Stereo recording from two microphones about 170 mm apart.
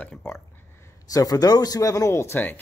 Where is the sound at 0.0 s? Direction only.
10° left (ahead or behind).